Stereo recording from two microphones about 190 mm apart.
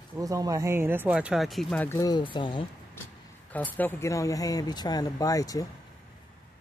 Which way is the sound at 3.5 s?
10° left (ahead or behind).